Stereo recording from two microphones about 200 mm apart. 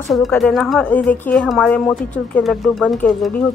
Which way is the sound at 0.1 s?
Centre (ahead or behind).